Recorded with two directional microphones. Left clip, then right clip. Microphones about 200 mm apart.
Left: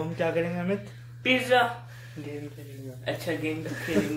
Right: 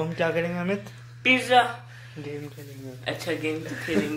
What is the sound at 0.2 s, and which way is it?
Speech, 35° right (ahead or behind).